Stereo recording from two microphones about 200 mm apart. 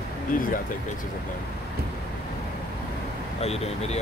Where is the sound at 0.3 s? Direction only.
45° left (ahead or behind).